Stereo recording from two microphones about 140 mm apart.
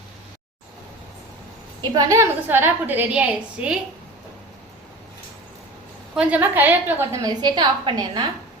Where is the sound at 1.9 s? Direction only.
20° right (ahead or behind).